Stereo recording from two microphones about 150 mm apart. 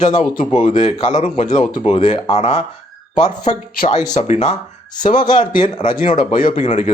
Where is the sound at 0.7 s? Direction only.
50° left (ahead or behind).